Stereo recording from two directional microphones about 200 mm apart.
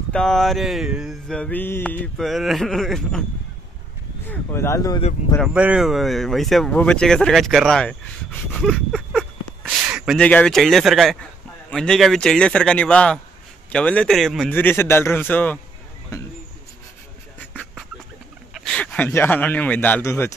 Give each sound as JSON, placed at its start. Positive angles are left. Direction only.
{"t": 0.1, "sound": "a sound", "side_deg": 5}
{"t": 4.3, "sound": "a man's voice", "side_deg": 15}
{"t": 5.4, "sound": "speech", "side_deg": -5}
{"t": 11.7, "sound": "a sound", "side_deg": 5}
{"t": 13.7, "sound": "a man's voice", "side_deg": 5}
{"t": 18.5, "sound": "speech", "side_deg": 0}